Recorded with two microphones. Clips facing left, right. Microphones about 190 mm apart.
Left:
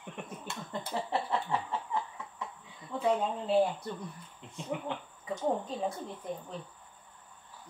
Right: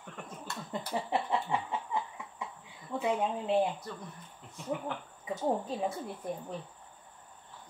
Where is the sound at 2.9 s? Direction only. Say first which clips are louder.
Left 1 dB; 10° right (ahead or behind).